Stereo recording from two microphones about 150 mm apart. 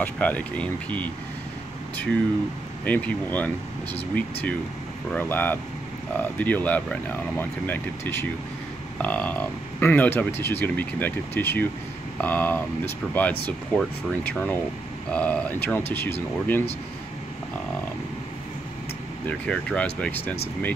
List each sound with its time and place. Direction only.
0.0 s speech: 10° left (ahead or behind)
2.8 s speech: 10° left (ahead or behind)
19.2 s speech: 10° left (ahead or behind)